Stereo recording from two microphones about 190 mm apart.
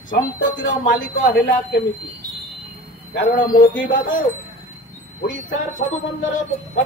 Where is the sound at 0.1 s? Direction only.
75° left (ahead or behind).